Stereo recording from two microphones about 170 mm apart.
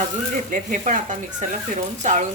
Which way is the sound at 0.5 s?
45° right (ahead or behind).